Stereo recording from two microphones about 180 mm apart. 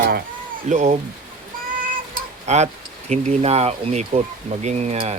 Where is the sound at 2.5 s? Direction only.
40° right (ahead or behind).